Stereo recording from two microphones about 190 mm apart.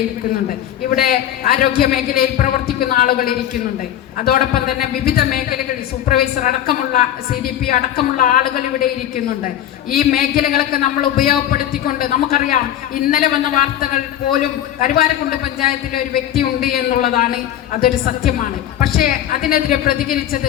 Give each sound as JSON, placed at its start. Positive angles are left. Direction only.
{"t": 0.9, "sound": "a woman's voice", "side_deg": 50}
{"t": 10.0, "sound": "a woman's voice", "side_deg": 50}